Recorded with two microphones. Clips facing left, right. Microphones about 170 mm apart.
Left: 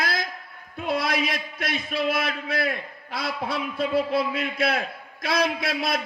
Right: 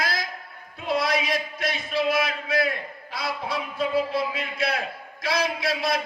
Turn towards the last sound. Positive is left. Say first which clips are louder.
# even
turn(degrees=55)  # may be behind; listen again after turning